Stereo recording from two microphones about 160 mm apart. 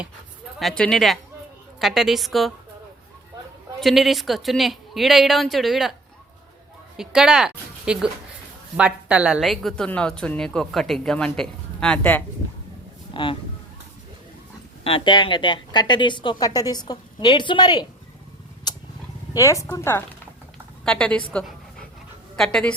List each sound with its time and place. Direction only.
0.6 s a woman's voice: 5° left (ahead or behind)
3.8 s a woman's voice: centre (ahead or behind)
6.9 s a woman's voice: 5° right (ahead or behind)
13.2 s speech: 30° left (ahead or behind)
14.8 s a woman's voice: 30° left (ahead or behind)
18.7 s a sound: 25° left (ahead or behind)
19.3 s a woman's voice: 20° left (ahead or behind); by 22.7 s 5° left (ahead or behind)